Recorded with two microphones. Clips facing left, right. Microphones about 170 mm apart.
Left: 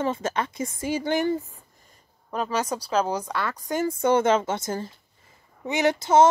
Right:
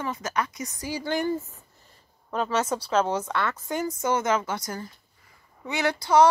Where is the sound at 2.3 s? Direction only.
10° left (ahead or behind).